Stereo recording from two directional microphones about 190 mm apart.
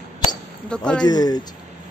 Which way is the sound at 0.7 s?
5° left (ahead or behind).